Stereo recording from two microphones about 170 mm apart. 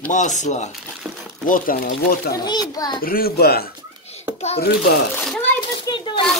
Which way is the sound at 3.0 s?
60° left (ahead or behind).